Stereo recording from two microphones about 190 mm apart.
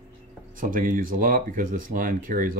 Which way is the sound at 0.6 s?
45° right (ahead or behind).